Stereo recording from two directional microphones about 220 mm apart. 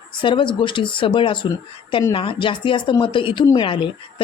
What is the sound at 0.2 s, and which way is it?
Speech, 20° left (ahead or behind).